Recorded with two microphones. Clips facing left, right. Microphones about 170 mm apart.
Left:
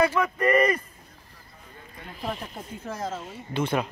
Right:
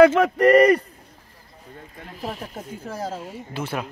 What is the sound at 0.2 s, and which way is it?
Speech, 80° right.